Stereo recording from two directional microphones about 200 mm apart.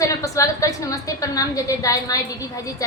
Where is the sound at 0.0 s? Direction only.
15° left (ahead or behind).